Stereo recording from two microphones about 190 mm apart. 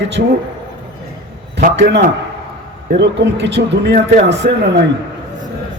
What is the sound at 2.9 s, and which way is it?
A man's voice, 65° right (ahead or behind).